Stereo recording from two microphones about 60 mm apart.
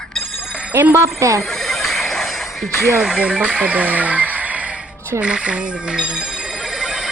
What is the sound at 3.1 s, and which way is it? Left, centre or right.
Speech, centre.